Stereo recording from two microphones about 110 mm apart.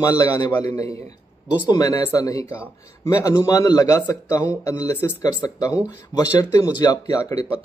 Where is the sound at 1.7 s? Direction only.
35° left (ahead or behind).